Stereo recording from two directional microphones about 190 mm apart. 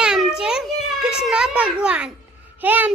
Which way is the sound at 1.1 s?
5° right (ahead or behind).